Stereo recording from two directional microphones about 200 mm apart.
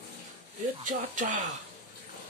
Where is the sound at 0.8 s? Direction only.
40° right (ahead or behind).